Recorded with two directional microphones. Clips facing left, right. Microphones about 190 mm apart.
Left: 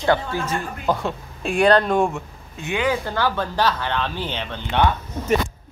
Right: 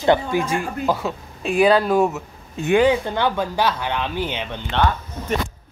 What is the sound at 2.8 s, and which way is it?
Speech, 20° right (ahead or behind).